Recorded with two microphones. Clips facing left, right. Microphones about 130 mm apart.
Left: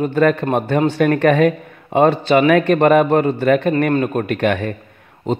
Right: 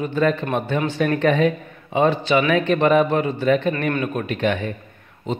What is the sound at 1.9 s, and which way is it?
A man's voice, 45° left (ahead or behind).